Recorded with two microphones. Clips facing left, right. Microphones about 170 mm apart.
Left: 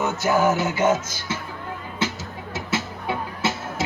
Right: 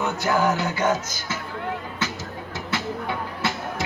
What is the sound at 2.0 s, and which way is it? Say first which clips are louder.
Music: left 2 dB; 25° left (ahead or behind).